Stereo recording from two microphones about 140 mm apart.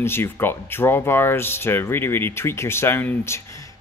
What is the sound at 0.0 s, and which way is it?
Speech, 15° left (ahead or behind).